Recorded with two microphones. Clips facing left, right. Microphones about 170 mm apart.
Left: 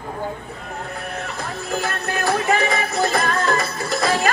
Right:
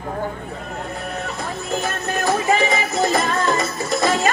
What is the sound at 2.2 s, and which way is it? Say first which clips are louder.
Music: right 1 dB; 20° right (ahead or behind).